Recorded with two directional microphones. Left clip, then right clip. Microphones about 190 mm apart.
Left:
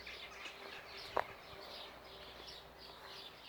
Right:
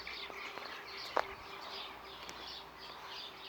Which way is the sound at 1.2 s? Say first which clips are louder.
Right 3 dB; 40° right (ahead or behind).